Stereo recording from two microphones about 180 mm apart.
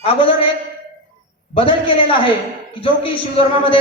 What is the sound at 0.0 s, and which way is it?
Speech, 30° left (ahead or behind).